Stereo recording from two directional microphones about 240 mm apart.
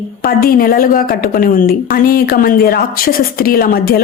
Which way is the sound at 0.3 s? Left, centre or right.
Left.